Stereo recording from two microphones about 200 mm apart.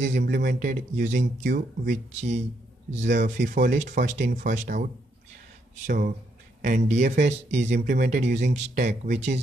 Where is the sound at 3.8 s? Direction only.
35° right (ahead or behind).